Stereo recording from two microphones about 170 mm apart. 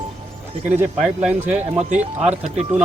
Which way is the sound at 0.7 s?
10° right (ahead or behind).